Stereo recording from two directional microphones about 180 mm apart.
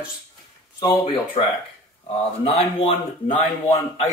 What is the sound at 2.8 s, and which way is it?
Speech, 35° left (ahead or behind).